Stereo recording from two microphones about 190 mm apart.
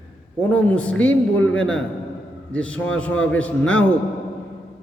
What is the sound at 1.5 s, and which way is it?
Mantra, 5° left (ahead or behind).